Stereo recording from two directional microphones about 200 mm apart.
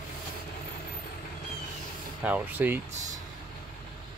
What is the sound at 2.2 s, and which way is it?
Speech, 10° right (ahead or behind).